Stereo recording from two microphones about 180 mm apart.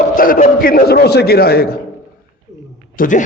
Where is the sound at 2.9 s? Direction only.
50° left (ahead or behind).